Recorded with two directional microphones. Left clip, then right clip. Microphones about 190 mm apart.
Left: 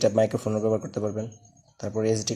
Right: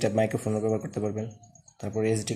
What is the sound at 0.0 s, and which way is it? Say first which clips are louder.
Speech: left 4 dB; 25° left (ahead or behind).